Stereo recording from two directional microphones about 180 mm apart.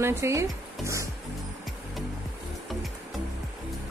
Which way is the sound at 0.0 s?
15° right (ahead or behind).